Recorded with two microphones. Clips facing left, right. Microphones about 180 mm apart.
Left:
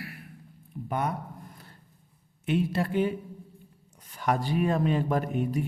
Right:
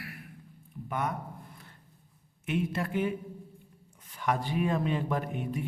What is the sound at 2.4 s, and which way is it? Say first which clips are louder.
Speech: left 4 dB; 30° left (ahead or behind).